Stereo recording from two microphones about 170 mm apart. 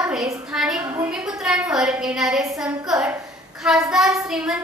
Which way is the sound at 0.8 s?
15° right (ahead or behind).